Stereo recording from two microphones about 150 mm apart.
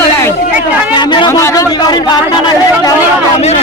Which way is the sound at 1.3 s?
20° left (ahead or behind).